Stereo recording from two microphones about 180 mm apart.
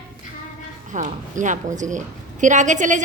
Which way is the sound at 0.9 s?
45° right (ahead or behind).